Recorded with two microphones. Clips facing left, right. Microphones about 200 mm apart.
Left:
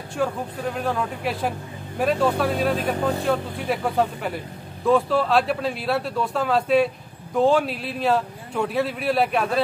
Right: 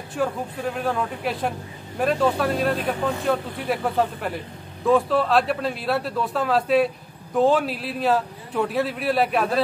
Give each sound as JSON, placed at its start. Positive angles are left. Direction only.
{"t": 0.1, "sound": "a man's voice", "side_deg": 0}
{"t": 2.8, "sound": "speech", "side_deg": 35}
{"t": 3.3, "sound": "a man's voice", "side_deg": 0}